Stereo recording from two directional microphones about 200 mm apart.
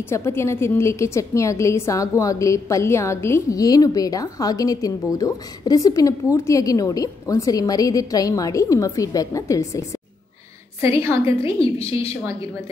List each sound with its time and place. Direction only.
0.1 s a woman's voice: 10° left (ahead or behind)
10.8 s a woman's voice: 15° right (ahead or behind)